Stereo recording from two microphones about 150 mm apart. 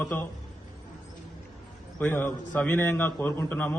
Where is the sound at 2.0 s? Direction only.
10° left (ahead or behind).